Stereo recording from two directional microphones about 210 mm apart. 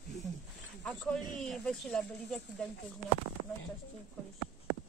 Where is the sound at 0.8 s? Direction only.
5° left (ahead or behind).